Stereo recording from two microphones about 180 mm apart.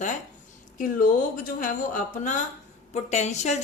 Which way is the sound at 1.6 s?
45° left (ahead or behind).